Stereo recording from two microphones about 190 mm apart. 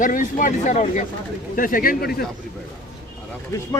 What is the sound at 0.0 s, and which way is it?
Speech, 45° left (ahead or behind).